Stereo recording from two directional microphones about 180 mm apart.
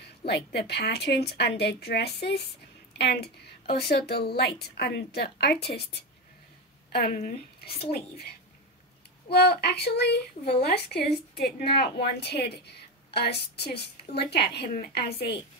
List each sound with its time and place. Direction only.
0.3 s a woman's voice: 65° left (ahead or behind)
7.1 s speech: 45° left (ahead or behind)
9.3 s a woman's voice: 65° left (ahead or behind)